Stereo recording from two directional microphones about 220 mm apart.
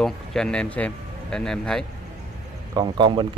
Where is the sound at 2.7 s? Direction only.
20° right (ahead or behind).